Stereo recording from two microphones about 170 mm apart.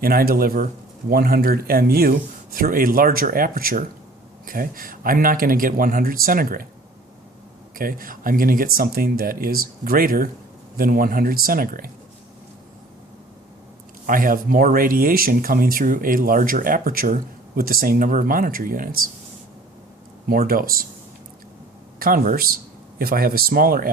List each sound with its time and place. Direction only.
0.0 s speech: 60° right (ahead or behind)
7.8 s speech: 55° right (ahead or behind)
14.1 s speech: 55° right (ahead or behind)
20.2 s speech: 60° right (ahead or behind)
21.9 s speech: 55° right (ahead or behind)